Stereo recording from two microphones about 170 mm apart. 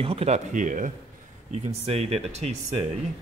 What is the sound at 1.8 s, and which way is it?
Speech, 35° right (ahead or behind).